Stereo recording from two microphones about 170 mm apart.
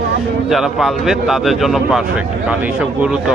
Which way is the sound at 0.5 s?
Centre (ahead or behind).